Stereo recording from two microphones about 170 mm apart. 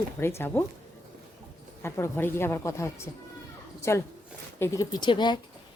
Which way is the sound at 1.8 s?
15° left (ahead or behind).